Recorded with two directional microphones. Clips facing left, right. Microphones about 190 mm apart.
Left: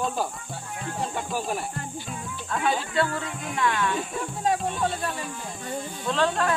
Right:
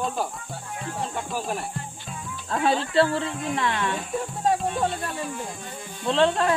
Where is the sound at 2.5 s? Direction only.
35° right (ahead or behind).